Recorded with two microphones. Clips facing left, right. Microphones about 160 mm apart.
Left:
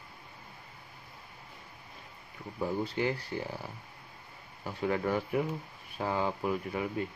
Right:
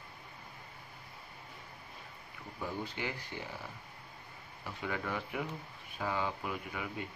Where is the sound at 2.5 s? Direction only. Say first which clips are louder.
Left 8 dB; 40° left (ahead or behind).